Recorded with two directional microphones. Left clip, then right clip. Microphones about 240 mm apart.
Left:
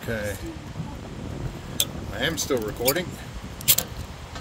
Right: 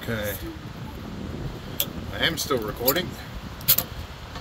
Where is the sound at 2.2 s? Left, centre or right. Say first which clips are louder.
Right 1 dB; centre.